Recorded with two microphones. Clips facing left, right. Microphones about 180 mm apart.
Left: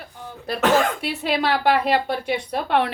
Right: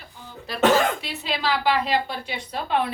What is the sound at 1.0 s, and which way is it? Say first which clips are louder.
Speech: left 5 dB; 55° left (ahead or behind).